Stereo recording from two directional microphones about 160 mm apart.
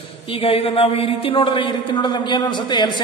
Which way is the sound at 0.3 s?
35° left (ahead or behind).